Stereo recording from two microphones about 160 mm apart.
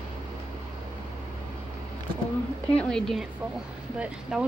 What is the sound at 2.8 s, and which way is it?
A woman's voice, 5° left (ahead or behind).